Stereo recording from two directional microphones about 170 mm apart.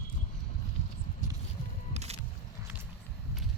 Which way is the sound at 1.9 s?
40° right (ahead or behind).